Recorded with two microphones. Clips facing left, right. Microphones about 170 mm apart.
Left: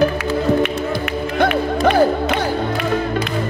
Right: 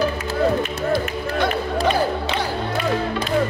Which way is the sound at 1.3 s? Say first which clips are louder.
Left 4 dB; 55° left (ahead or behind).